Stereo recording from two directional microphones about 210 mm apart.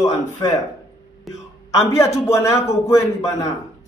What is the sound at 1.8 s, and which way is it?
A man's voice, 15° left (ahead or behind).